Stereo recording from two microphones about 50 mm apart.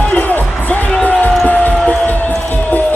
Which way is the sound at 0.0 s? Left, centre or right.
Left.